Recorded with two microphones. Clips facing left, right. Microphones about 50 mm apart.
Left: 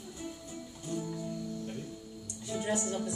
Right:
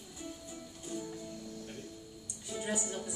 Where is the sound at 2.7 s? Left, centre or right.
Centre.